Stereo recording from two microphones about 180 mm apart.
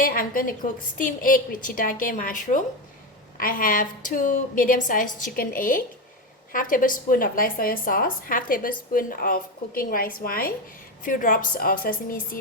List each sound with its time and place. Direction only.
0.0 s a woman's voice: 50° left (ahead or behind)